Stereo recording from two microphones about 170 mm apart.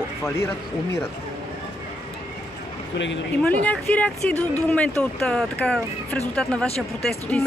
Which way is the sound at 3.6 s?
10° left (ahead or behind).